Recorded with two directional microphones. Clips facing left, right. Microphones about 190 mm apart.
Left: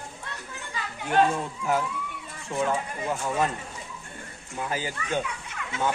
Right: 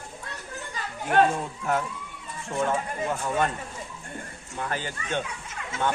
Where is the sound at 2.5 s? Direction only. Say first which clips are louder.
Right 1 dB; centre (ahead or behind).